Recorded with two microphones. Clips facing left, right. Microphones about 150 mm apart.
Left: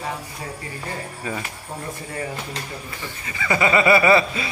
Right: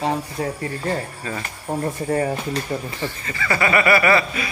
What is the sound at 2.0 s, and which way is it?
Speech, 40° right (ahead or behind).